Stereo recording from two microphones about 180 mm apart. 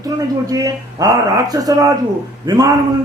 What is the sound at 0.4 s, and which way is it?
A man's voice, 20° right (ahead or behind).